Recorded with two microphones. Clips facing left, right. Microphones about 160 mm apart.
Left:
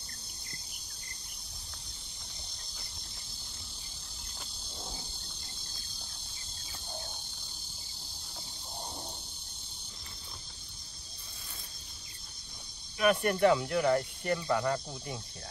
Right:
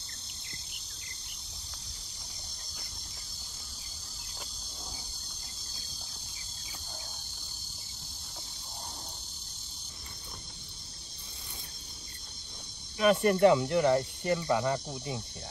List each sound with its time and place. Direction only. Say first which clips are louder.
13.0 s speech: right 3 dB; 25° right (ahead or behind)